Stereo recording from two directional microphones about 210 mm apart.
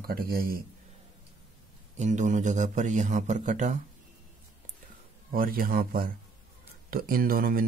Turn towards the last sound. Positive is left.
turn(degrees=-45)  # may be behind; listen again after turning